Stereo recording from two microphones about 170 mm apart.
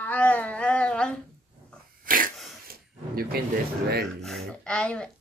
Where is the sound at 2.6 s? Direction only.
60° right (ahead or behind).